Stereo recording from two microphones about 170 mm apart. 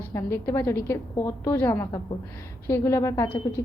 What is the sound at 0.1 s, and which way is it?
A woman's voice, 15° left (ahead or behind).